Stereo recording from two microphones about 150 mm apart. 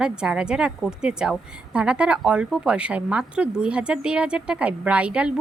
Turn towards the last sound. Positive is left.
turn(degrees=-10)  # may be behind; listen again after turning